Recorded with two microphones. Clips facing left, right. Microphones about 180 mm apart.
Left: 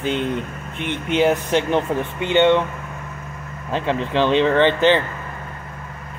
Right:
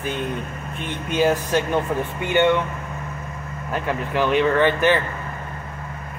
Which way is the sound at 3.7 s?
25° left (ahead or behind).